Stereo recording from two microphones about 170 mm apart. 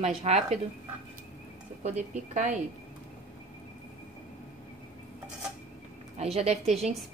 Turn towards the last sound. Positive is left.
turn(degrees=-40)  # may be behind; listen again after turning